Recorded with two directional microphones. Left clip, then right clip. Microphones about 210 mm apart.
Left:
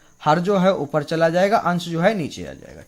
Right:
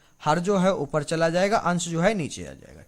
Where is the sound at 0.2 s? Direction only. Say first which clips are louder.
Left 5 dB; 5° right (ahead or behind).